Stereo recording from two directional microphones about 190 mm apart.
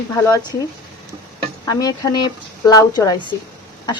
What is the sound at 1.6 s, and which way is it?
Speech, 20° left (ahead or behind).